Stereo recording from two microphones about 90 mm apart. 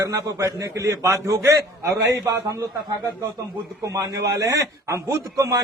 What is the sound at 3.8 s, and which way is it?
A man's voice, 40° right (ahead or behind).